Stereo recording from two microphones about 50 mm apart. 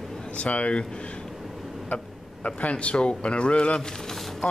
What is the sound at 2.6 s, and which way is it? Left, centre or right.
Speech, left.